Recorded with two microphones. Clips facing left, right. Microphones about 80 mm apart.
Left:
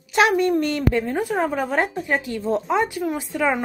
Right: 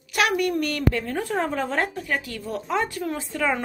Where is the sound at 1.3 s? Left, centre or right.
Centre.